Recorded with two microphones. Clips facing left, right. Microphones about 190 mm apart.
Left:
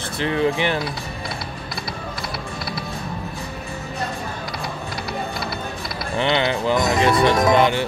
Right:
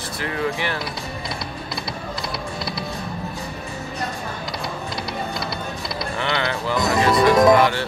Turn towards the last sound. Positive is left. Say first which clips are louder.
# right 2 dB
turn(degrees=20)  # may be behind; listen again after turning